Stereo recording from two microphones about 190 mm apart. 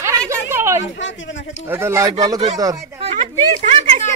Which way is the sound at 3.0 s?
30° right (ahead or behind).